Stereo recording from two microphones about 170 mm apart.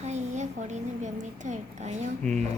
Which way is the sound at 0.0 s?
45° right (ahead or behind).